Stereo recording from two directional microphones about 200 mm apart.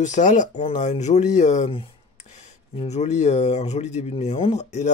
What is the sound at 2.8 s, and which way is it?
Speech, 35° left (ahead or behind).